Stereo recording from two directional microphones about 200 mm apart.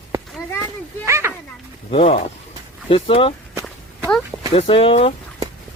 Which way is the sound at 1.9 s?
30° left (ahead or behind).